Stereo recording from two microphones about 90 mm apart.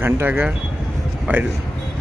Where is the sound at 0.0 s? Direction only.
20° right (ahead or behind).